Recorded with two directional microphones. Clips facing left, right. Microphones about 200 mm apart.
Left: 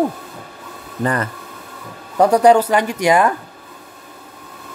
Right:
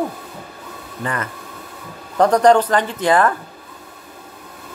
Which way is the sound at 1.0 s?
35° left (ahead or behind).